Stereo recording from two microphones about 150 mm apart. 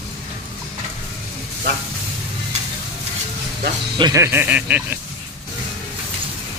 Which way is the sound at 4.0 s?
20° right (ahead or behind).